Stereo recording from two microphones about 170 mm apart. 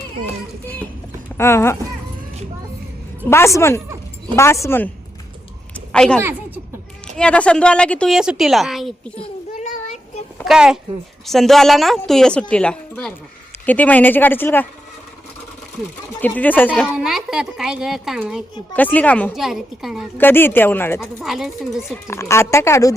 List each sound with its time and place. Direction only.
1.4 s speech: 15° left (ahead or behind)
3.2 s speech: 15° left (ahead or behind)
5.7 s a sound: 5° left (ahead or behind)
7.2 s a woman's voice: 5° left (ahead or behind)
9.6 s a sound: 45° left (ahead or behind)
10.3 s a sound: centre (ahead or behind)
11.3 s a woman's voice: centre (ahead or behind)
16.2 s a woman's voice: 10° left (ahead or behind)
18.7 s a woman's voice: 10° left (ahead or behind)
20.1 s speech: 10° left (ahead or behind)
21.0 s a woman's voice: centre (ahead or behind)
22.0 s speech: 15° left (ahead or behind)